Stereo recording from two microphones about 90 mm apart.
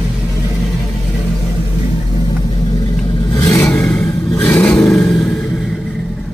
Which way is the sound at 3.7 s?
15° left (ahead or behind).